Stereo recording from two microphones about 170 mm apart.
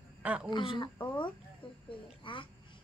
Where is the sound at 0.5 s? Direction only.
25° left (ahead or behind).